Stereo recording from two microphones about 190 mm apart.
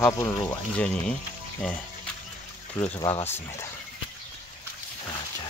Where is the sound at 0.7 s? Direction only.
5° left (ahead or behind).